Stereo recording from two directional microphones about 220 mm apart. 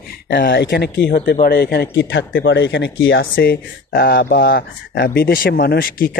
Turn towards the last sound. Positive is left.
turn(degrees=40)  # may be behind; listen again after turning